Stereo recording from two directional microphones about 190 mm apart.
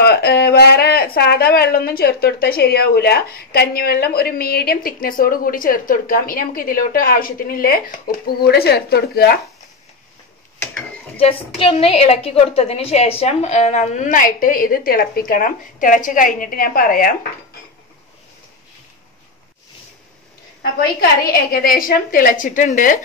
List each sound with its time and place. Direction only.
0.0 s speech: 60° left (ahead or behind)
11.1 s speech: 30° left (ahead or behind); by 17.1 s 50° left (ahead or behind)
21.3 s speech: 50° left (ahead or behind)